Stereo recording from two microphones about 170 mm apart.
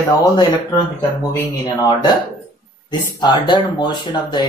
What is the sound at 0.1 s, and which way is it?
Speech, 25° left (ahead or behind).